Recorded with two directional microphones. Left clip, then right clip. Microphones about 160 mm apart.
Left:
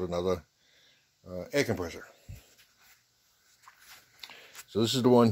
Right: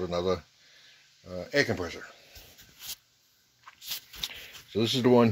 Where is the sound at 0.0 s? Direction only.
20° left (ahead or behind).